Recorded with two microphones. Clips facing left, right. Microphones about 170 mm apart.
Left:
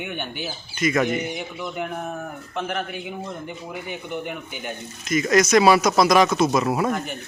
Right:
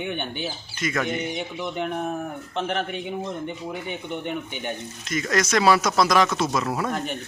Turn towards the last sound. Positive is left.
turn(degrees=15)  # may be behind; listen again after turning